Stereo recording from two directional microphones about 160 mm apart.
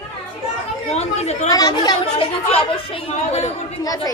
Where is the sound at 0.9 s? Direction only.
45° left (ahead or behind).